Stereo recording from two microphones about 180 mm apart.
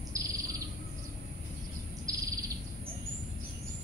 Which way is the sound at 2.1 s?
20° right (ahead or behind).